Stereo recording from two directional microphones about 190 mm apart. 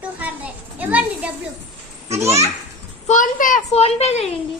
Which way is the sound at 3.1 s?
45° left (ahead or behind).